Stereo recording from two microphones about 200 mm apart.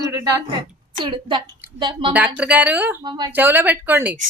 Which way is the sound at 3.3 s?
10° right (ahead or behind).